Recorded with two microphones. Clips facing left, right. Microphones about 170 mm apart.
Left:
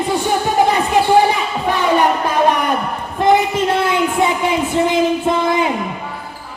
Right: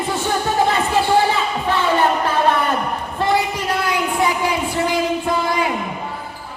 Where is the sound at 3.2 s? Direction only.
20° left (ahead or behind).